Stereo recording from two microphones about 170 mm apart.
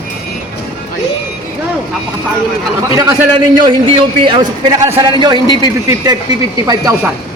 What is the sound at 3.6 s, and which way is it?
A man's voice, 30° right (ahead or behind).